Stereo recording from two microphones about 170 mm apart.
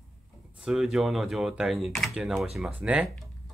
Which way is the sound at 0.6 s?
Centre (ahead or behind).